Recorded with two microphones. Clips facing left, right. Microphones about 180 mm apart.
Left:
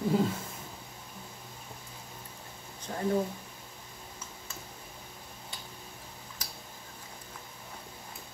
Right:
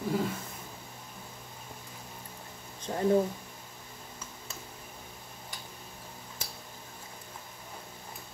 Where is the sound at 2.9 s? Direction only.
30° right (ahead or behind).